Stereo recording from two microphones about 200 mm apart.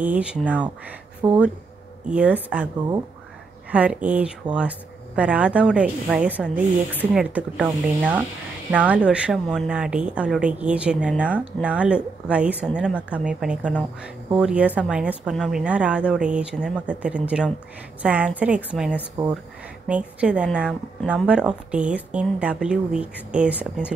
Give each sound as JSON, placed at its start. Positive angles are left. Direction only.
{"t": 0.0, "sound": "speech", "side_deg": -5}
{"t": 1.2, "sound": "speech", "side_deg": -15}
{"t": 3.7, "sound": "speech", "side_deg": -5}
{"t": 19.2, "sound": "speech", "side_deg": -20}
{"t": 19.9, "sound": "speech", "side_deg": -5}